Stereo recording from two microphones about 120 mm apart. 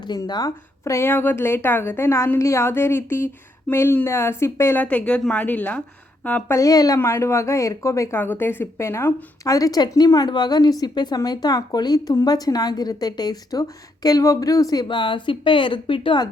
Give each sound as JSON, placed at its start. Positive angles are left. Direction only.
{"t": 0.0, "sound": "a woman's voice", "side_deg": 35}
{"t": 6.6, "sound": "a woman's voice", "side_deg": 30}
{"t": 9.5, "sound": "a woman's voice", "side_deg": 30}